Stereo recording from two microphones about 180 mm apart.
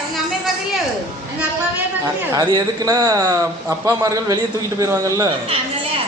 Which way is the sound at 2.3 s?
20° right (ahead or behind).